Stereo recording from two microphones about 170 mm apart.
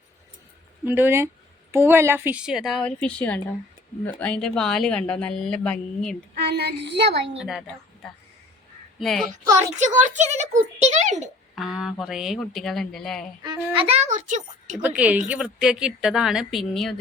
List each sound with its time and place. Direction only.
0.9 s a woman's voice: 10° right (ahead or behind); by 6.1 s 5° left (ahead or behind)
6.3 s speech: 75° right (ahead or behind)
7.3 s speech: centre (ahead or behind)
9.0 s speech: centre (ahead or behind)
9.7 s a child's voice: 45° right (ahead or behind)
11.5 s speech: centre (ahead or behind)
13.7 s a child's voice: 35° right (ahead or behind)
14.8 s a woman's voice: 10° right (ahead or behind)